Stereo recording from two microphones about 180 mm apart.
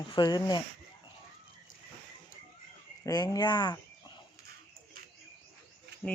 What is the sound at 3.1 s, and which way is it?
Speech, 20° left (ahead or behind).